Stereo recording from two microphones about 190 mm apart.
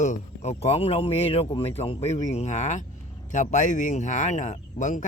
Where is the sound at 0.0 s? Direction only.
35° left (ahead or behind).